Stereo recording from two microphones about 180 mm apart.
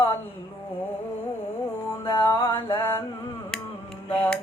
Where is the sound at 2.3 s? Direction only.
25° left (ahead or behind).